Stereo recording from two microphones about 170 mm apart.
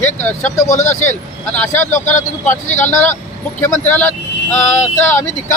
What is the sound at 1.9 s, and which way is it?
Speech, 45° left (ahead or behind).